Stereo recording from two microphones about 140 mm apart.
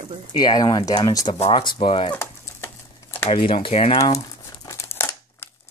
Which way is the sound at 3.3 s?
40° left (ahead or behind).